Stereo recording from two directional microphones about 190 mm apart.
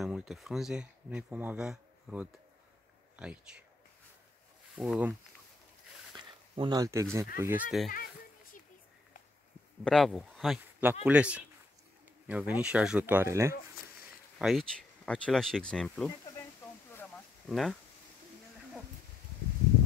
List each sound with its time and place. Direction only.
0.0 s speech: centre (ahead or behind)
4.7 s speech: 5° right (ahead or behind)
6.1 s speech: 25° right (ahead or behind)
9.8 s speech: centre (ahead or behind); by 13.6 s 15° right (ahead or behind)
14.4 s speech: centre (ahead or behind)
16.9 s a sound: 10° left (ahead or behind)
17.5 s speech: centre (ahead or behind)